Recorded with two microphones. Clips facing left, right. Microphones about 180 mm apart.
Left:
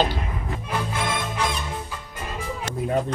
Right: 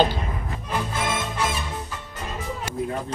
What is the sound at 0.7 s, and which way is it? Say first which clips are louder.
Music: right 1 dB; 5° right (ahead or behind).